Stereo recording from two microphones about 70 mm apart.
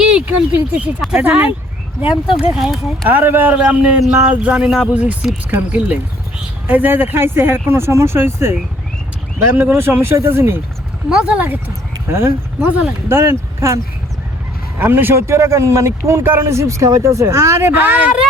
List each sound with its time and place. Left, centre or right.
0.0 s a sound: centre
0.3 s a man's voice: right
2.6 s speech: centre
3.1 s a man's voice: right
11.1 s a man's voice: centre
12.0 s speech: right
14.8 s speech: right
15.3 s speech: right
17.7 s a man's voice: right